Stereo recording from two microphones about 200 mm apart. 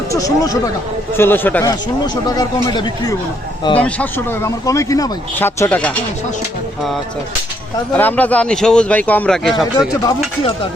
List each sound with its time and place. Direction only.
0.1 s a man's voice: 15° left (ahead or behind)
3.8 s a man's voice: 5° left (ahead or behind)
7.9 s a man's voice: 10° left (ahead or behind)